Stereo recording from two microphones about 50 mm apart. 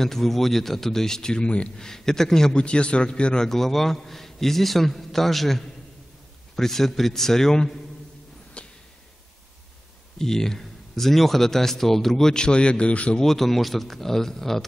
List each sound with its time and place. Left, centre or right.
0.0 s speech: centre
1.9 s speech: centre
3.4 s a man's voice: centre
8.6 s a sound: left
10.1 s speech: centre
13.2 s a man's voice: centre